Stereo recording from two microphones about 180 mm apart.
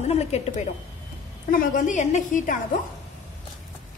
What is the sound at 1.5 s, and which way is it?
A woman's voice, 50° left (ahead or behind).